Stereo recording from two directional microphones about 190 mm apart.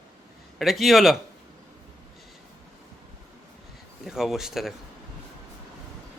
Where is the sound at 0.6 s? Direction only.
Centre (ahead or behind).